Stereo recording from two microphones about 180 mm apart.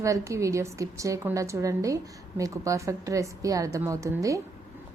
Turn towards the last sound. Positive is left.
turn(degrees=-15)  # may be behind; listen again after turning